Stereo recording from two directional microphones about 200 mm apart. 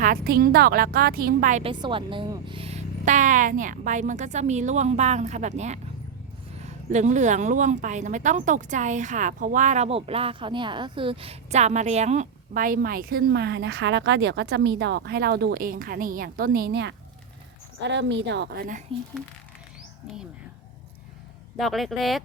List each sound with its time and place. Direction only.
0.0 s a woman's voice: 45° right (ahead or behind)
1.8 s a woman's voice: 25° right (ahead or behind); by 18.8 s 50° right (ahead or behind)
21.6 s speech: centre (ahead or behind)